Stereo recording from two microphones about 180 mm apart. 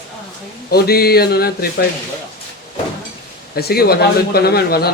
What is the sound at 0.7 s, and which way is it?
A man's voice, 60° left (ahead or behind).